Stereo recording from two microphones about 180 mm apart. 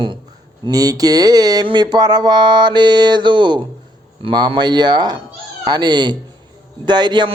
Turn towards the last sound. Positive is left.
turn(degrees=-25)  # may be behind; listen again after turning